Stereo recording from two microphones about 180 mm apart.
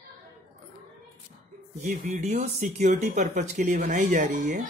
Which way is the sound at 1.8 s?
40° right (ahead or behind).